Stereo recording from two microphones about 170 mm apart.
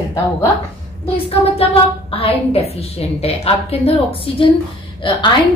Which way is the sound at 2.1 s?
35° left (ahead or behind).